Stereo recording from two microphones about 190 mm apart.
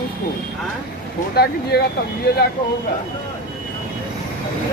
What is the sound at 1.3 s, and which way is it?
Speech, 60° left (ahead or behind).